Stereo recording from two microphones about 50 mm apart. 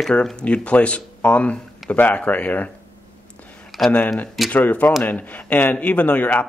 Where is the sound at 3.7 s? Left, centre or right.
Centre.